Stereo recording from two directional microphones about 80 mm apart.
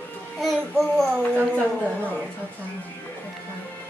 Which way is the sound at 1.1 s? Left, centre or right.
Centre.